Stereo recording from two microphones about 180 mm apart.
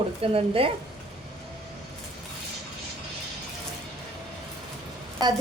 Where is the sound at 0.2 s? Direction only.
30° right (ahead or behind).